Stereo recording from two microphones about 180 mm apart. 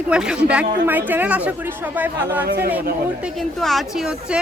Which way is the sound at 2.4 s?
65° right (ahead or behind).